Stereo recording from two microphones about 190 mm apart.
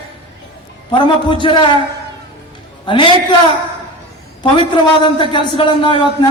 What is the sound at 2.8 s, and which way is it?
Speech, 25° left (ahead or behind).